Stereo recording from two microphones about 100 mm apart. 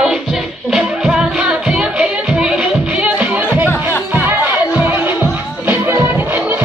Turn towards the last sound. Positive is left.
turn(degrees=-20)  # may be behind; listen again after turning